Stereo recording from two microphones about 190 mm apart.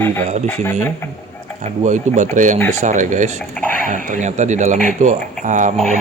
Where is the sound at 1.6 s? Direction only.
40° right (ahead or behind).